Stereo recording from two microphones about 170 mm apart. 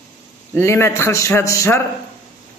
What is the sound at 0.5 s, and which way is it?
A man's voice, 15° left (ahead or behind).